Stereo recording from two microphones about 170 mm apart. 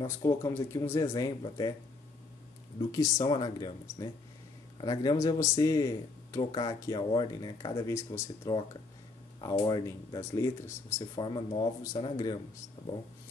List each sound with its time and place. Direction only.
0.0 s speech: 15° left (ahead or behind)
2.8 s speech: 20° left (ahead or behind)